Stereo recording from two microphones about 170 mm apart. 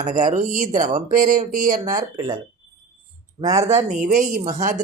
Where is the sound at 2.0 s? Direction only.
25° right (ahead or behind).